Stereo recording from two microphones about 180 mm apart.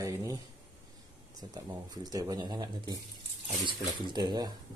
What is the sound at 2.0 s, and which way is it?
Speech, 20° right (ahead or behind).